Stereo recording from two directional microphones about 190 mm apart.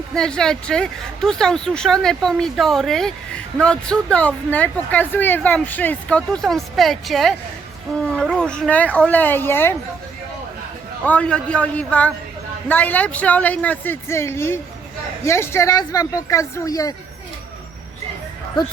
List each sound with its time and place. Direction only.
0.2 s speech: 5° left (ahead or behind)
11.0 s speech: 5° left (ahead or behind)